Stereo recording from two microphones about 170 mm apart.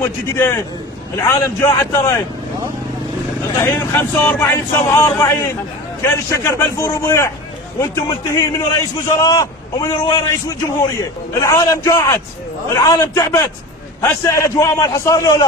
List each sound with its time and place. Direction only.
0.0 s speech: 15° left (ahead or behind)
3.5 s a man's voice: 15° left (ahead or behind)